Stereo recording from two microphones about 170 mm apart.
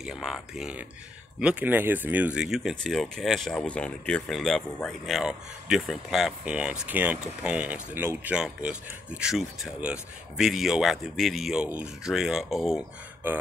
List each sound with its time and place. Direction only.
0.0 s speech: 5° right (ahead or behind)